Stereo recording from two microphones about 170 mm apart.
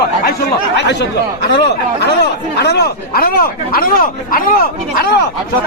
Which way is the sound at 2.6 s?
75° left (ahead or behind).